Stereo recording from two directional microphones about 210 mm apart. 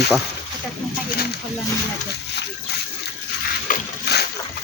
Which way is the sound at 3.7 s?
50° left (ahead or behind).